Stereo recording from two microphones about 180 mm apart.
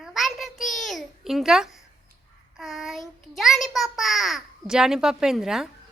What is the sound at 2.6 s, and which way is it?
A child's voice, centre (ahead or behind).